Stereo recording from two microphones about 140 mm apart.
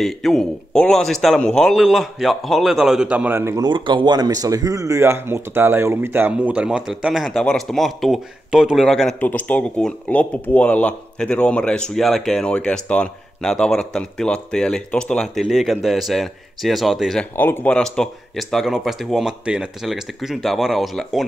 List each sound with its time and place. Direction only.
0.0 s speech: 5° left (ahead or behind); by 3.6 s 20° right (ahead or behind)
3.6 s speech: 35° right (ahead or behind); by 9.1 s centre (ahead or behind)
9.2 s speech: 10° left (ahead or behind)
17.4 s speech: 15° left (ahead or behind)